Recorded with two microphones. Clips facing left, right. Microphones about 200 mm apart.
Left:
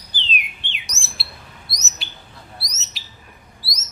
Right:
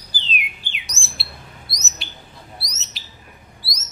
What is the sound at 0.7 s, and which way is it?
Bird, centre (ahead or behind).